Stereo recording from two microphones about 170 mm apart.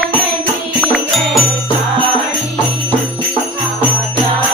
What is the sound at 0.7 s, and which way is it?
Music, centre (ahead or behind).